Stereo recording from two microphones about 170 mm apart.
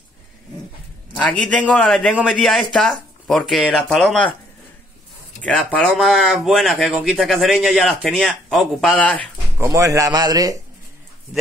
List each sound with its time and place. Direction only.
1.1 s speech: 5° left (ahead or behind)
5.4 s speech: 5° left (ahead or behind)
9.6 s speech: 15° right (ahead or behind)